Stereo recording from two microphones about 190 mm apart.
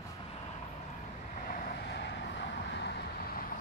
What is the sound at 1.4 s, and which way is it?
Vehicle, 50° left (ahead or behind).